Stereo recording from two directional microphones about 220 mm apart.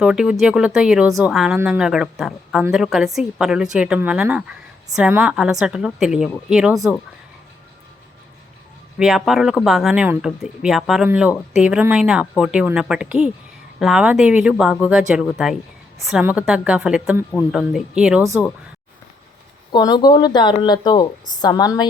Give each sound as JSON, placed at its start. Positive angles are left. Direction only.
{"t": 0.0, "sound": "speech", "side_deg": -5}
{"t": 9.0, "sound": "speech", "side_deg": 0}
{"t": 19.7, "sound": "a woman's voice", "side_deg": 20}